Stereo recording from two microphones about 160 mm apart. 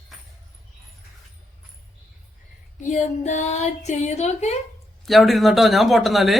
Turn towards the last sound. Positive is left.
turn(degrees=0)  # may be behind; listen again after turning